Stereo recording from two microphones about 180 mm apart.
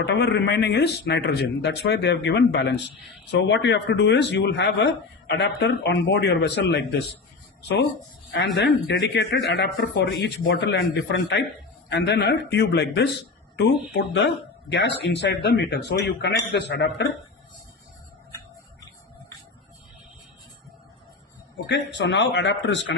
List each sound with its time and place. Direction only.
0.0 s speech: 75° left (ahead or behind)
8.5 s speech: 75° left (ahead or behind)
21.7 s speech: 75° left (ahead or behind)